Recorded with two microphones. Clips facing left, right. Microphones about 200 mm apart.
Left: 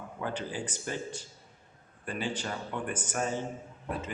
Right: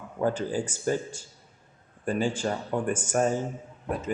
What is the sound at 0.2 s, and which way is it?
Speech, 45° right (ahead or behind).